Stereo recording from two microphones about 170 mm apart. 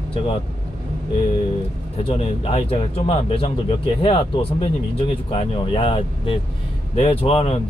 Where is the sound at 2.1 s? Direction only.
35° left (ahead or behind).